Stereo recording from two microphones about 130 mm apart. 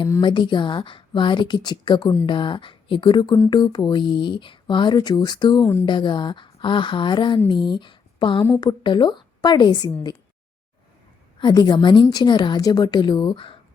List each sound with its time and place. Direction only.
0.2 s speech: 35° left (ahead or behind)
11.3 s speech: 35° left (ahead or behind)